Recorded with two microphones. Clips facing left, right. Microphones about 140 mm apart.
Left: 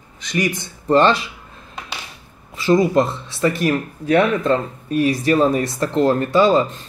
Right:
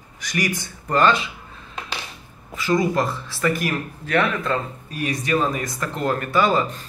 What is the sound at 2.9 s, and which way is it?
Speech, 20° left (ahead or behind).